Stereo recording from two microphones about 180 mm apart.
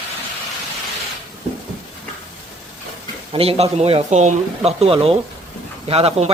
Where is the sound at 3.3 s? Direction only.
35° right (ahead or behind).